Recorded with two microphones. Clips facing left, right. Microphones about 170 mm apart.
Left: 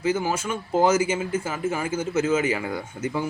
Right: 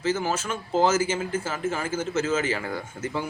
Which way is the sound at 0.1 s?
10° left (ahead or behind).